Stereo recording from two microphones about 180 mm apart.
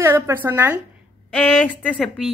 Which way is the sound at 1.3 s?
10° left (ahead or behind).